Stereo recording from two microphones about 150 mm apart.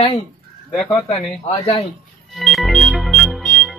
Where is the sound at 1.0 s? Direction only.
45° left (ahead or behind).